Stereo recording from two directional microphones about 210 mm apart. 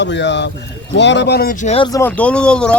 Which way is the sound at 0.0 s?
55° left (ahead or behind).